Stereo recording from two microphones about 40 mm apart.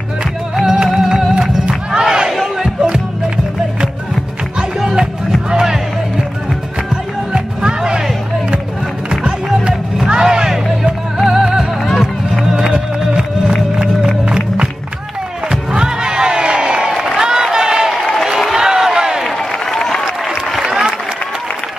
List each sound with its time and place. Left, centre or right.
0.8 s music: centre
4.6 s music: centre
9.1 s music: centre
11.9 s music: centre
12.7 s music: centre
14.2 s music: right
15.5 s a sound: centre
19.3 s applause: centre
20.2 s applause: centre